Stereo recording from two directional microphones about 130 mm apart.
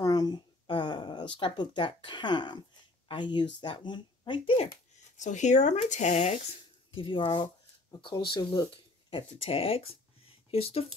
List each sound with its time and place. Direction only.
0.0 s a sound: 30° left (ahead or behind)
3.1 s speech: 35° left (ahead or behind)
5.1 s speech: 65° left (ahead or behind)
6.9 s speech: 40° left (ahead or behind)
9.1 s speech: 45° left (ahead or behind)